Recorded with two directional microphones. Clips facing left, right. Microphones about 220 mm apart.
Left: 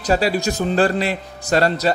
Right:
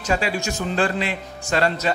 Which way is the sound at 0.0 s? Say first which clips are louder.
Left 5 dB; 35° left (ahead or behind).